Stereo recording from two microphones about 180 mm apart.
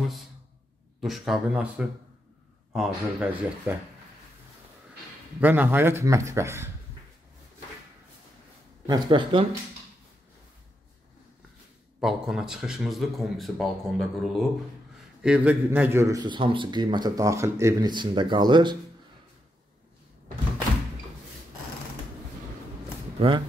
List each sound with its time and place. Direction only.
1.0 s a man's voice: centre (ahead or behind)
5.4 s speech: 10° right (ahead or behind)
8.8 s a man's voice: 25° right (ahead or behind)
12.0 s a man's voice: centre (ahead or behind); by 18.8 s 25° right (ahead or behind)
23.1 s speech: 30° right (ahead or behind)